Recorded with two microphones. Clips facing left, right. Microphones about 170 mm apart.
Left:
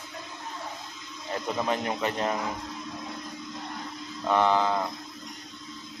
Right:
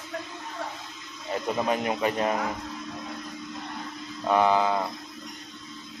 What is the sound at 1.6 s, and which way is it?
Speech, 10° right (ahead or behind).